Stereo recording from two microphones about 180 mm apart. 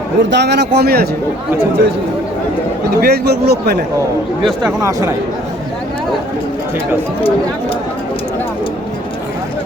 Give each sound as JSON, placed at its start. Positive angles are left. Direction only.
{"t": 0.2, "sound": "a man's voice", "side_deg": -75}
{"t": 3.0, "sound": "a man's voice", "side_deg": -65}
{"t": 4.9, "sound": "speech", "side_deg": -15}